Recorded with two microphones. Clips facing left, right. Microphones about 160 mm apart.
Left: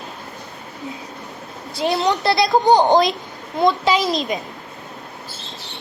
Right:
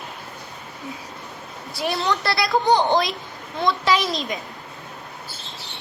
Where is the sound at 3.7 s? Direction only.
20° left (ahead or behind).